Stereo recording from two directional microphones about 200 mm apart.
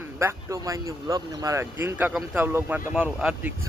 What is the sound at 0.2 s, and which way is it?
Speech, 15° right (ahead or behind).